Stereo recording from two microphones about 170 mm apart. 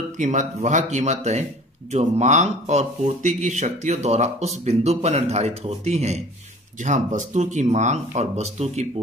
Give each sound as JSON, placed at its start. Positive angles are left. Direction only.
{"t": 0.2, "sound": "speech", "side_deg": -45}